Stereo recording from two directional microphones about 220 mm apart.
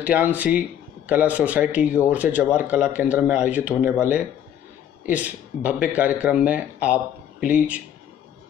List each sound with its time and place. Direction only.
0.0 s speech: 5° right (ahead or behind)